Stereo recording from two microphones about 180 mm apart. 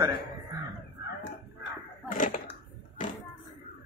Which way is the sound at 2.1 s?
45° left (ahead or behind).